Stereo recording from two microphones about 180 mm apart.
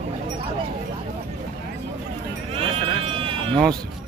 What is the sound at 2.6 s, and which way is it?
Sheep, 30° right (ahead or behind).